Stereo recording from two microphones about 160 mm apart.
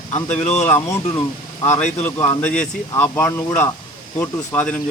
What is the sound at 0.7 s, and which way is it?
Speech, 15° left (ahead or behind).